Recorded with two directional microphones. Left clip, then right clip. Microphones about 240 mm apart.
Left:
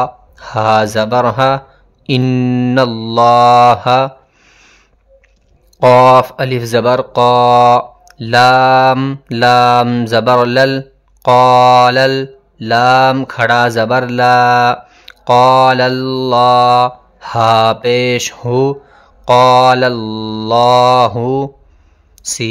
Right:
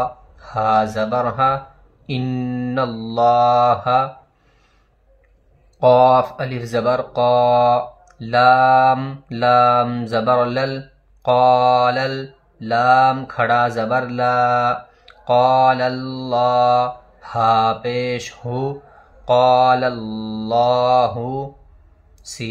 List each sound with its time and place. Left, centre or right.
0.0 s mantra: left
5.8 s mantra: left
22.2 s speech: left